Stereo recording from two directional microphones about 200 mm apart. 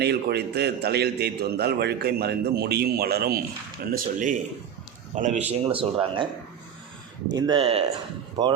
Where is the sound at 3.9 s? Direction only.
40° right (ahead or behind).